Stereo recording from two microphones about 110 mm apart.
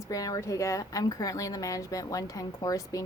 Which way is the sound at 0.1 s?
35° left (ahead or behind).